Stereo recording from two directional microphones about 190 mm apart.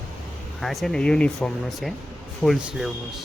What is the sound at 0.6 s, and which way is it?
Speech, centre (ahead or behind).